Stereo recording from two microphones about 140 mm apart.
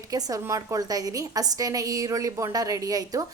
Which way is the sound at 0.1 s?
25° right (ahead or behind).